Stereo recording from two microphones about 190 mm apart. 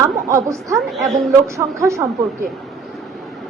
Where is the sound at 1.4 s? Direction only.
15° right (ahead or behind).